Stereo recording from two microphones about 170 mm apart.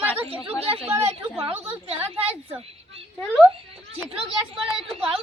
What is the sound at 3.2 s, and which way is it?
Speech, 10° left (ahead or behind).